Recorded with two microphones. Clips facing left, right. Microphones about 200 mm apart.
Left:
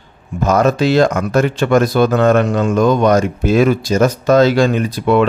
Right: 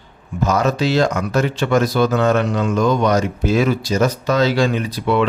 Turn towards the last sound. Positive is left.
turn(degrees=50)  # may be behind; listen again after turning